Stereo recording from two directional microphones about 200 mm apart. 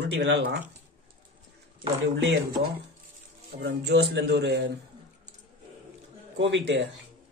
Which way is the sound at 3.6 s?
55° right (ahead or behind).